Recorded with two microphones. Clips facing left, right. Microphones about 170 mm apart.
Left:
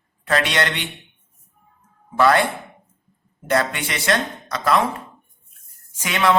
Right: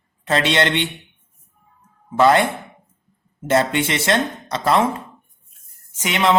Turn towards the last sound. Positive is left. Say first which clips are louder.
# right 1 dB
turn(degrees=-20)  # may be behind; listen again after turning